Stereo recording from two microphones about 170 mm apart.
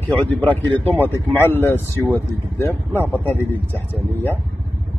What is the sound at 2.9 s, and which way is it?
Speech, 10° right (ahead or behind).